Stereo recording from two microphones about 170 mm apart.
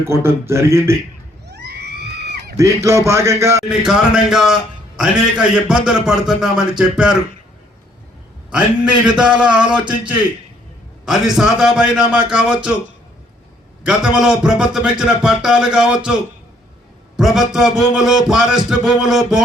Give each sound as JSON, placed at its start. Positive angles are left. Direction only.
{"t": 0.0, "sound": "a man's voice", "side_deg": -15}
{"t": 1.5, "sound": "a sound", "side_deg": -80}
{"t": 2.6, "sound": "a man's voice", "side_deg": -15}
{"t": 3.7, "sound": "a man's voice", "side_deg": -5}
{"t": 8.5, "sound": "a man's voice", "side_deg": -5}
{"t": 11.0, "sound": "a man's voice", "side_deg": 0}
{"t": 13.8, "sound": "a man's voice", "side_deg": -5}
{"t": 17.2, "sound": "a man's voice", "side_deg": 0}